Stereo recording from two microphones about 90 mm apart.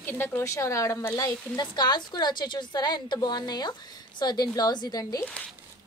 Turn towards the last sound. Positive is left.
turn(degrees=45)  # may be behind; listen again after turning